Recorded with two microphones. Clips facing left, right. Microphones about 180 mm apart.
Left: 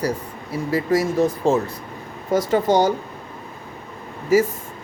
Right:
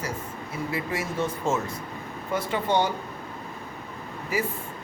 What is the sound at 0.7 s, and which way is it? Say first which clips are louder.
Speech: left 12 dB; 40° left (ahead or behind).